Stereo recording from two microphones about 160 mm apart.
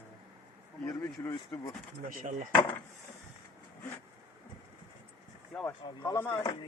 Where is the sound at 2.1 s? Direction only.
55° right (ahead or behind).